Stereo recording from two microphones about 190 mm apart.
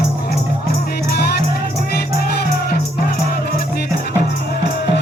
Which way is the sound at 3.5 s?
55° left (ahead or behind).